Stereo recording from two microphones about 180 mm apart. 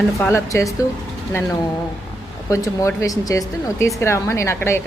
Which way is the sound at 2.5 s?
15° left (ahead or behind).